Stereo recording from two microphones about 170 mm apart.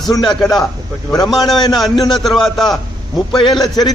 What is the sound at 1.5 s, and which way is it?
Speech, 25° left (ahead or behind).